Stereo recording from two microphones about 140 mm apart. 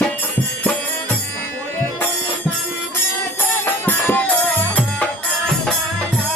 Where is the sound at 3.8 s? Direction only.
15° left (ahead or behind).